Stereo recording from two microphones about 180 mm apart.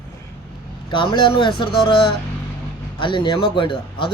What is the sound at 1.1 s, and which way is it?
Speech, 25° left (ahead or behind).